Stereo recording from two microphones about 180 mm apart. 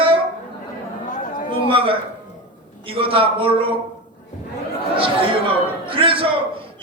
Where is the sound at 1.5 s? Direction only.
30° right (ahead or behind).